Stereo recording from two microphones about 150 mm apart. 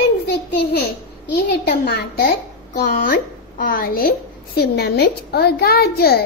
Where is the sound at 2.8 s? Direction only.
75° left (ahead or behind).